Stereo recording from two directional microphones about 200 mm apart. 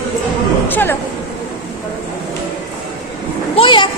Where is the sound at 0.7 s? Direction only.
10° left (ahead or behind).